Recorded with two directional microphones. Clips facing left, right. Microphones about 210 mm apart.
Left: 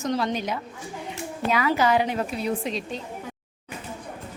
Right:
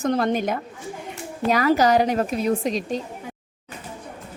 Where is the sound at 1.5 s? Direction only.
40° right (ahead or behind).